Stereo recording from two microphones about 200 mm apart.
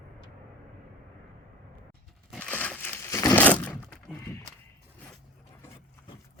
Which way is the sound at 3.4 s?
10° left (ahead or behind).